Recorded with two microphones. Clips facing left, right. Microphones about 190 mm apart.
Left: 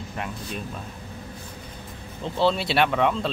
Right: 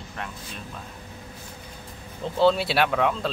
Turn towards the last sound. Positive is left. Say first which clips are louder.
# left 1 dB
turn(degrees=0)  # may be behind; listen again after turning